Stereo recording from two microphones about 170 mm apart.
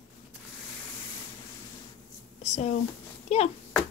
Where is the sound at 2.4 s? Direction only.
45° left (ahead or behind).